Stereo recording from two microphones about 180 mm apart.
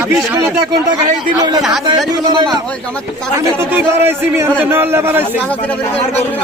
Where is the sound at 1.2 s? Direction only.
20° right (ahead or behind).